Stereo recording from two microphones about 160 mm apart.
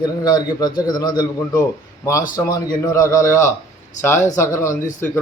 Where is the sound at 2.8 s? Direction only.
20° left (ahead or behind).